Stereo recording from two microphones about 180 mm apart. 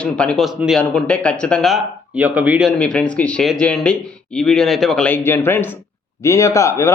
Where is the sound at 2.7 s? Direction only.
5° left (ahead or behind).